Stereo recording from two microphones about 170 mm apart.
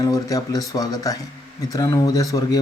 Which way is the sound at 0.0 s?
20° left (ahead or behind).